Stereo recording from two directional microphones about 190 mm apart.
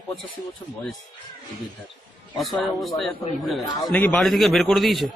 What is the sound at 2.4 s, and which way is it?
Speech, centre (ahead or behind).